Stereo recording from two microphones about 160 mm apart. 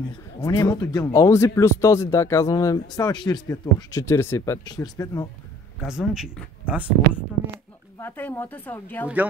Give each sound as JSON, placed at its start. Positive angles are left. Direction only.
{"t": 0.5, "sound": "speech", "side_deg": 25}
{"t": 5.9, "sound": "speech", "side_deg": -5}
{"t": 8.0, "sound": "speech", "side_deg": 10}
{"t": 9.0, "sound": "speech", "side_deg": -10}